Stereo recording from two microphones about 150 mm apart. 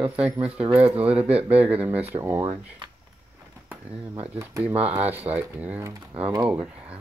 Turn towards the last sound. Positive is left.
turn(degrees=-10)  # may be behind; listen again after turning